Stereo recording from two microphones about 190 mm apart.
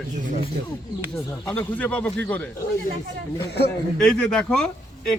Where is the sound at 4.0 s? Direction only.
5° left (ahead or behind).